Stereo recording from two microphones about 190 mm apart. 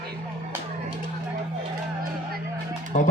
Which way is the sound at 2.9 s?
40° left (ahead or behind).